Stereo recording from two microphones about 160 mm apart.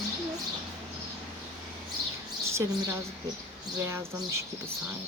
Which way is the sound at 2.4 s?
15° right (ahead or behind).